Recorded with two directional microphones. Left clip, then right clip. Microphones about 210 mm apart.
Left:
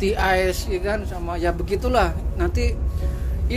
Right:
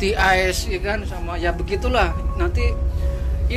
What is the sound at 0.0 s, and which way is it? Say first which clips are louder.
Speech: right 2 dB; 15° left (ahead or behind).